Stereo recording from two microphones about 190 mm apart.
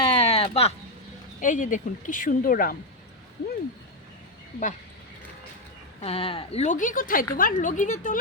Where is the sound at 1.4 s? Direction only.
40° left (ahead or behind).